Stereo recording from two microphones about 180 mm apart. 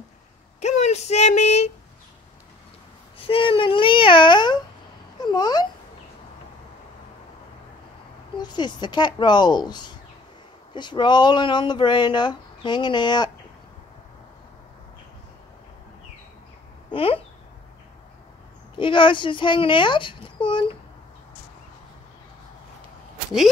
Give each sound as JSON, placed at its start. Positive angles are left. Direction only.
{"t": 0.6, "sound": "speech", "side_deg": 40}
{"t": 3.2, "sound": "speech", "side_deg": 30}
{"t": 5.2, "sound": "a sound", "side_deg": 20}
{"t": 8.4, "sound": "speech", "side_deg": 25}
{"t": 16.9, "sound": "speech", "side_deg": 30}
{"t": 18.8, "sound": "speech", "side_deg": 30}